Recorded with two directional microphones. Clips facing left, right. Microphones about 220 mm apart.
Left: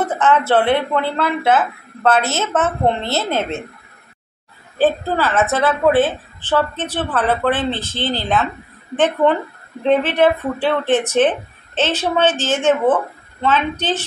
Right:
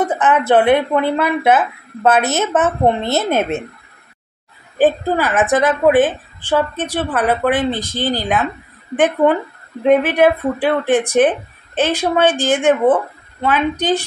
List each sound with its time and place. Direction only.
0.0 s a woman's voice: 15° right (ahead or behind)
4.7 s a woman's voice: 15° right (ahead or behind)